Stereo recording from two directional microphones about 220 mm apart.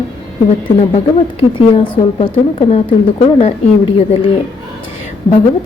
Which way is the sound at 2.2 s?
30° left (ahead or behind).